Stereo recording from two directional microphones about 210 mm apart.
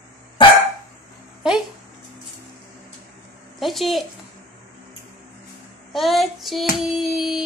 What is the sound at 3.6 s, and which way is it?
Child singing, centre (ahead or behind).